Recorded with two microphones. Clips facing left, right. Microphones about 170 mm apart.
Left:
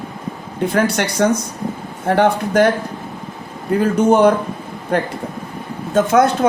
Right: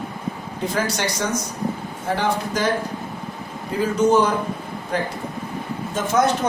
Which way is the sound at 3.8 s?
60° left (ahead or behind).